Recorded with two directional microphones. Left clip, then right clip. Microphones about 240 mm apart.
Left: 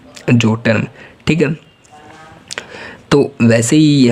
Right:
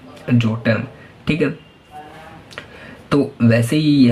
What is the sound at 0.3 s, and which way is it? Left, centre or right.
Speech, left.